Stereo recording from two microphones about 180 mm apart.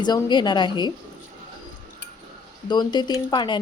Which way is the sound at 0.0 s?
25° left (ahead or behind).